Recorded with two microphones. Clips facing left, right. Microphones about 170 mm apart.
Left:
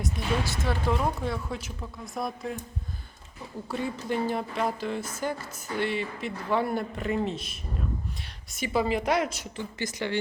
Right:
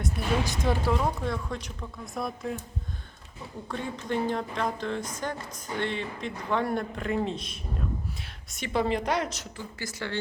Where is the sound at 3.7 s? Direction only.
5° left (ahead or behind).